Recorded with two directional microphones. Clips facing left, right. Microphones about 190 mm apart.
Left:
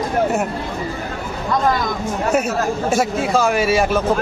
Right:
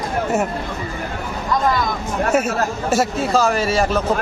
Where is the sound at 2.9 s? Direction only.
Centre (ahead or behind).